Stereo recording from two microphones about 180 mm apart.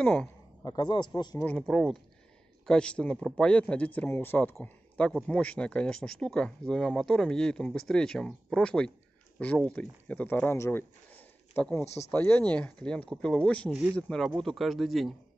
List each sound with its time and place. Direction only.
0.0 s speech: 5° left (ahead or behind)
0.7 s a man's voice: 25° left (ahead or behind)
1.4 s speech: 5° left (ahead or behind)
11.8 s speech: 35° left (ahead or behind)
12.1 s speech: 10° left (ahead or behind)